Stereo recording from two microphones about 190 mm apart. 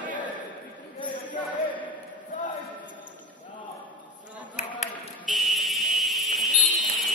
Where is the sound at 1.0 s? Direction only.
25° left (ahead or behind).